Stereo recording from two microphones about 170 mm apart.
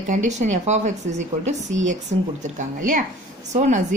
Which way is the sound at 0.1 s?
45° right (ahead or behind).